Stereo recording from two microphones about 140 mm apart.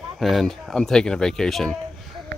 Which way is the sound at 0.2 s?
Centre (ahead or behind).